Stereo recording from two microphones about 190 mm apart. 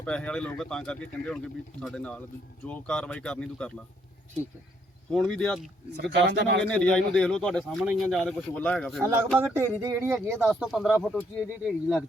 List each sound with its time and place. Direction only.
0.0 s speech: 5° left (ahead or behind)
5.1 s speech: 5° left (ahead or behind)
6.0 s speech: 65° right (ahead or behind)
6.7 s speech: 5° left (ahead or behind)
9.6 s speech: 15° right (ahead or behind)
10.2 s speech: centre (ahead or behind)